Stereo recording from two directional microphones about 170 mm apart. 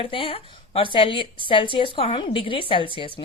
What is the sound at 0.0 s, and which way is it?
A woman's voice, 30° left (ahead or behind).